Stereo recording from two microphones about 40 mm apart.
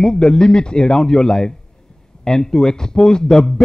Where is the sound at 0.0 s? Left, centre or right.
Centre.